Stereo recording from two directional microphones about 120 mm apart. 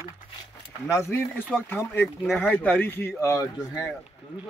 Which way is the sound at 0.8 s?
25° left (ahead or behind).